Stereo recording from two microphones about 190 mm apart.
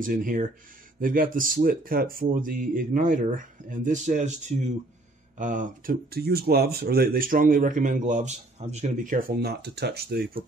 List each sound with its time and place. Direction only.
0.0 s speech: 45° right (ahead or behind)